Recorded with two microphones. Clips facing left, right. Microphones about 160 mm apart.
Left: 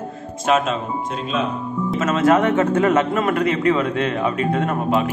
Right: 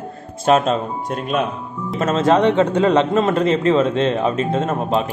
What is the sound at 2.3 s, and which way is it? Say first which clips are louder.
A man's voice: right 2 dB; 20° right (ahead or behind).